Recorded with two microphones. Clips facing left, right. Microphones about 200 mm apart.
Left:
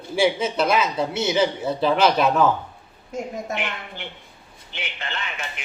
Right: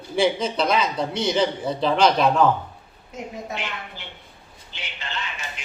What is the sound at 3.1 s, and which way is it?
Speech, 45° left (ahead or behind).